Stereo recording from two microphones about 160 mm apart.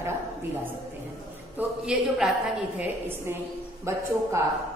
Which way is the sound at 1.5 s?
5° right (ahead or behind).